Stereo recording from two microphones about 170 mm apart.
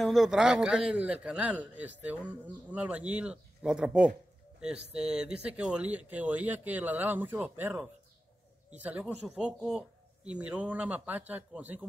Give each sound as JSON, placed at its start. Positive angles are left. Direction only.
{"t": 0.0, "sound": "a man's voice", "side_deg": 0}